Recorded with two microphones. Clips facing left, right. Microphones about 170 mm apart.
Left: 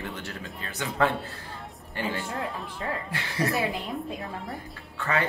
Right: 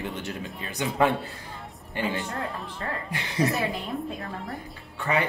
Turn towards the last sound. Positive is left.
turn(degrees=-15)  # may be behind; listen again after turning